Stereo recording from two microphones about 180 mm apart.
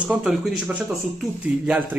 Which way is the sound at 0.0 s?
5° right (ahead or behind).